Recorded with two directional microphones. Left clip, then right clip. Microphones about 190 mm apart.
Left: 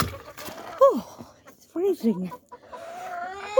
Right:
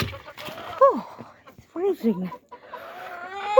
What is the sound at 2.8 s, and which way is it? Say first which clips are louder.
Baby cry: left 5 dB; 15° left (ahead or behind).